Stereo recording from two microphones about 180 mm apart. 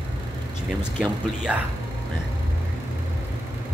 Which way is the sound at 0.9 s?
Centre (ahead or behind).